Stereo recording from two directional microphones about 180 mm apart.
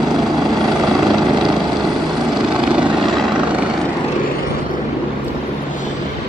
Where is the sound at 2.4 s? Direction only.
5° right (ahead or behind).